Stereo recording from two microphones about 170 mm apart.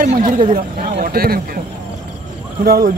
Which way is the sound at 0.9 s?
60° right (ahead or behind).